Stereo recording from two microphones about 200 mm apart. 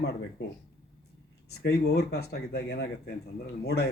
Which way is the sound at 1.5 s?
55° left (ahead or behind).